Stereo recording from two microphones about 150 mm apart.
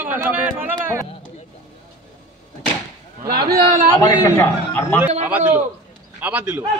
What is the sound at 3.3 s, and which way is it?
Speech, 90° right.